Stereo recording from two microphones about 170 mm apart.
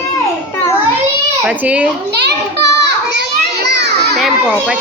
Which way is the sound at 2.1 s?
80° right.